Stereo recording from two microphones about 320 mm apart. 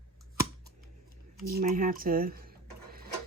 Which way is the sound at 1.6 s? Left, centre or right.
Right.